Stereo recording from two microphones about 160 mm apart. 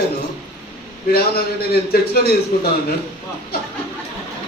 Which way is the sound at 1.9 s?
80° left.